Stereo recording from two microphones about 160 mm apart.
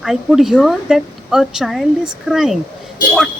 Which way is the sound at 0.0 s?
5° right (ahead or behind).